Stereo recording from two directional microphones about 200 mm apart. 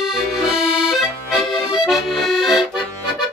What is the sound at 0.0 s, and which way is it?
Accordion, centre (ahead or behind).